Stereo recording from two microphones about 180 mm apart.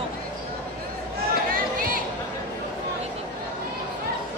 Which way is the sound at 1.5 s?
50° right (ahead or behind).